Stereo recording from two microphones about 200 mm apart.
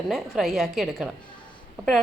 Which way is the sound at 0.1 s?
Centre (ahead or behind).